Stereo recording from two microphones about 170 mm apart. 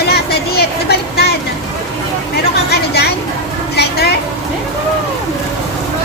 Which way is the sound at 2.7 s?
70° left (ahead or behind).